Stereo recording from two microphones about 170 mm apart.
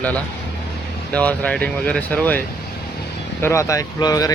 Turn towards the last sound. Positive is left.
turn(degrees=20)  # may be behind; listen again after turning